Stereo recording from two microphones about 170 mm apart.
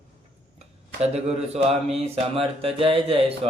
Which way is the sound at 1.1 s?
40° right (ahead or behind).